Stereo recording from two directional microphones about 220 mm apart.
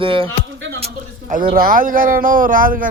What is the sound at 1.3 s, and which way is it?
Speech, 40° right (ahead or behind).